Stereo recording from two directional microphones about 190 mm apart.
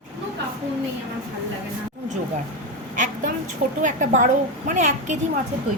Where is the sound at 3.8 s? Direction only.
40° right (ahead or behind).